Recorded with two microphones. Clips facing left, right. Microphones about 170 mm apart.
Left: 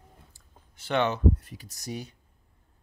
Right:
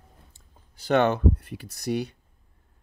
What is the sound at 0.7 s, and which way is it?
Speech, 40° right (ahead or behind).